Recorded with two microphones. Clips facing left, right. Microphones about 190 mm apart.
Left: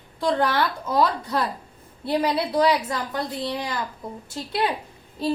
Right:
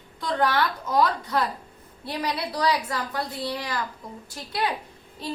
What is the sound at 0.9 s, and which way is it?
A woman's voice, 30° left (ahead or behind).